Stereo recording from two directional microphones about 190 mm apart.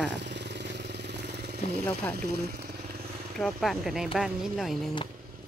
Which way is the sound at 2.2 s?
55° right (ahead or behind).